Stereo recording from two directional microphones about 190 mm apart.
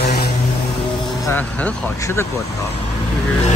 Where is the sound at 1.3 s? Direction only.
10° left (ahead or behind).